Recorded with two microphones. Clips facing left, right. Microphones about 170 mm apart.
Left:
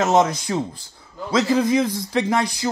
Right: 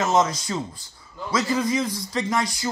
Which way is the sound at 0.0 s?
60° left (ahead or behind).